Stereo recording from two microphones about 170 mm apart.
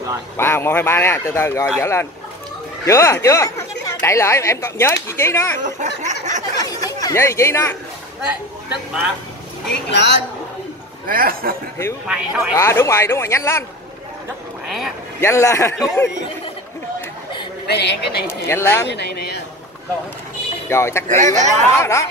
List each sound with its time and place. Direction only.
0.4 s speech: 15° left (ahead or behind)
5.6 s speech: 45° right (ahead or behind)
6.6 s chatter: 20° left (ahead or behind)
9.9 s a woman's voice: 90° left
11.1 s speech: 60° right (ahead or behind)
12.1 s speech: 5° right (ahead or behind)
12.5 s speech: 15° left (ahead or behind)
15.1 s speech: 15° left (ahead or behind)
17.6 s a woman's voice: 80° left
18.2 s speech: 15° left (ahead or behind)
18.9 s speech: 85° left
20.6 s speech: 15° left (ahead or behind)
21.2 s speech: 45° right (ahead or behind)
21.7 s speech: 15° left (ahead or behind)